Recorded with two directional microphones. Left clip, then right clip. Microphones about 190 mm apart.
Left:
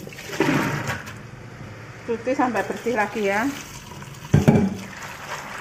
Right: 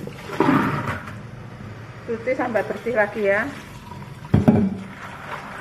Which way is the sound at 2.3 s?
45° left (ahead or behind).